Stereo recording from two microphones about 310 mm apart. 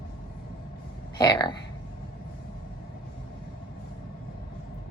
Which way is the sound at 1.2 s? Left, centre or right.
Centre.